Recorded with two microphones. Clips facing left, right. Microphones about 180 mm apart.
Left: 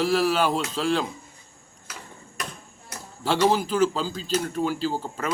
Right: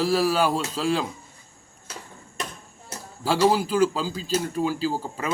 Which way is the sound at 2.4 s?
25° right (ahead or behind).